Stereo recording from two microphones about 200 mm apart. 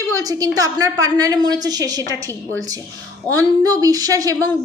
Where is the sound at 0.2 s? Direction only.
20° right (ahead or behind).